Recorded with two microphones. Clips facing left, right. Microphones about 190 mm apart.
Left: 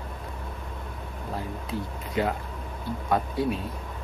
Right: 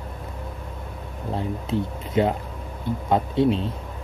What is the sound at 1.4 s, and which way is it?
Speech, 25° right (ahead or behind).